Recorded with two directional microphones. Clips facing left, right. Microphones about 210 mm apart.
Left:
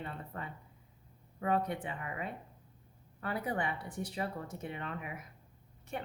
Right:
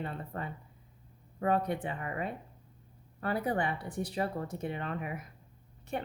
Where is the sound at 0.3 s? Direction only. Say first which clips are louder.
Right 5 dB; 35° right (ahead or behind).